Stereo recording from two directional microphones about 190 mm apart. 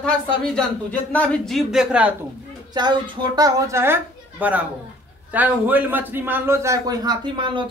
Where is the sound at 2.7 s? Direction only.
25° right (ahead or behind).